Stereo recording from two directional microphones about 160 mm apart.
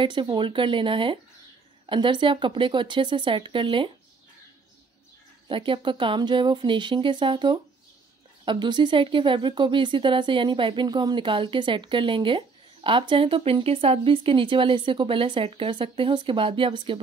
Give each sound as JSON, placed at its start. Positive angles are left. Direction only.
{"t": 0.0, "sound": "speech", "side_deg": -30}
{"t": 5.5, "sound": "speech", "side_deg": -30}